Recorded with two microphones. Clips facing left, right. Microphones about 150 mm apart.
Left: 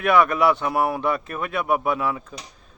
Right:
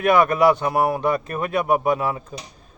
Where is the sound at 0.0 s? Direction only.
45° right (ahead or behind).